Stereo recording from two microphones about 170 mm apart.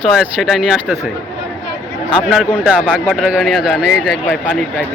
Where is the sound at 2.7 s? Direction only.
Centre (ahead or behind).